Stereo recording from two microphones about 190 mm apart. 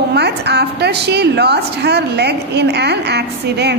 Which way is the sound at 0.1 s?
60° right (ahead or behind).